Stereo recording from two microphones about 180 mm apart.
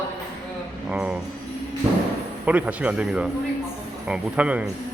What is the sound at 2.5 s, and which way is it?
A man's voice, 10° right (ahead or behind).